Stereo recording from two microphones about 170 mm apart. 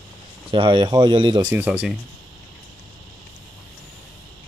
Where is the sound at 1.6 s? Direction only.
5° right (ahead or behind).